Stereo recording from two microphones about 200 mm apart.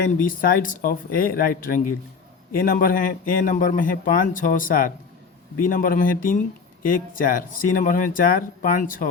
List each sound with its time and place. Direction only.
0.2 s a man's voice: 45° left (ahead or behind)